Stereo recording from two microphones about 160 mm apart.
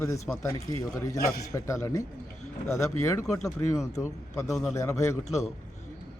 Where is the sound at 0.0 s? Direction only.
20° left (ahead or behind).